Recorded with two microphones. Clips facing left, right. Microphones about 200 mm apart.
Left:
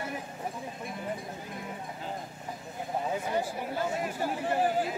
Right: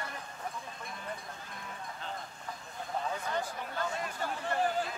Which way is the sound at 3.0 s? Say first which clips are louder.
Left 6 dB; 10° left (ahead or behind).